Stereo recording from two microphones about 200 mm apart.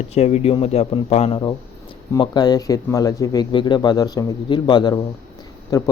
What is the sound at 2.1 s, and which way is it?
A man's voice, 20° left (ahead or behind).